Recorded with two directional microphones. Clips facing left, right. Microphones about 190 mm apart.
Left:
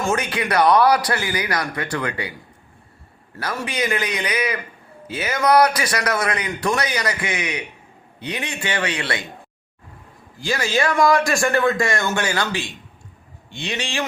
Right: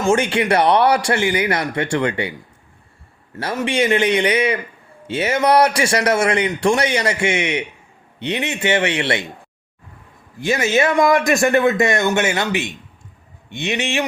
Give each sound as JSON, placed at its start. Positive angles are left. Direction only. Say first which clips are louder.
{"t": 0.0, "sound": "a man's voice", "louder": "right 6 dB", "side_deg": -25}
{"t": 3.3, "sound": "a man's voice", "louder": "right 6 dB", "side_deg": -20}
{"t": 10.4, "sound": "a man's voice", "louder": "right 4 dB", "side_deg": -20}